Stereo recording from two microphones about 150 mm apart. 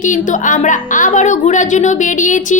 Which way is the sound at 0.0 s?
60° left (ahead or behind).